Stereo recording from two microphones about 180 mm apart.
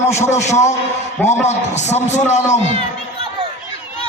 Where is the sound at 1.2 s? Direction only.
10° left (ahead or behind).